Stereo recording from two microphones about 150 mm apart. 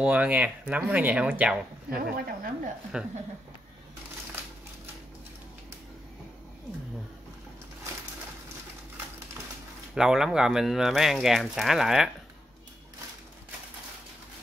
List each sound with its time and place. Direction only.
0.0 s speech: 10° right (ahead or behind)
2.1 s speech: 70° right (ahead or behind)
2.9 s speech: 5° right (ahead or behind)
9.9 s speech: 5° right (ahead or behind)